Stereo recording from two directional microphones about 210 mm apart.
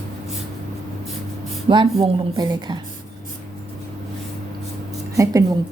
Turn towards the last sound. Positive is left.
turn(degrees=-15)  # may be behind; listen again after turning